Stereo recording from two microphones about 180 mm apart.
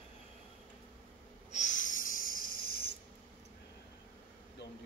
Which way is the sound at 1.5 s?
40° left (ahead or behind).